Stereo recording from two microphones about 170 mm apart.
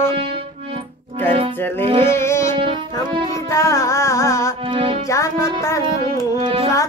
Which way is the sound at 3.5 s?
15° left (ahead or behind).